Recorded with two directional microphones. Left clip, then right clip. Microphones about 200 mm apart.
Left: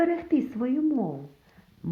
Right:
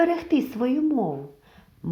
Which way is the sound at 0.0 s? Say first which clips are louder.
Right 3 dB; 45° right (ahead or behind).